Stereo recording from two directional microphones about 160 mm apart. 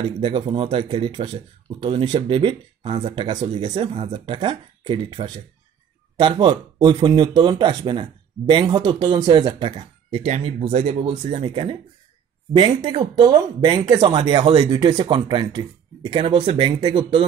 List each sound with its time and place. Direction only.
0.0 s speech: 35° right (ahead or behind)